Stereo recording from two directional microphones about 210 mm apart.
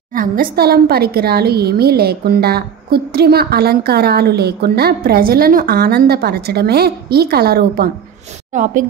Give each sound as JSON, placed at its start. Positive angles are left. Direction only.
{"t": 0.1, "sound": "a woman's voice", "side_deg": -40}